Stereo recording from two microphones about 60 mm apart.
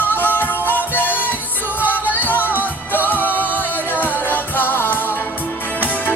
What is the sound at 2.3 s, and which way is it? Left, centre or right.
Music, right.